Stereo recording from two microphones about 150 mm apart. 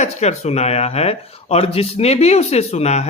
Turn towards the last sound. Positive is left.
turn(degrees=50)  # may be behind; listen again after turning